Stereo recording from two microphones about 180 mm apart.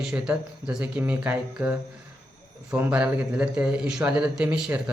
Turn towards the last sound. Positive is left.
turn(degrees=-5)  # may be behind; listen again after turning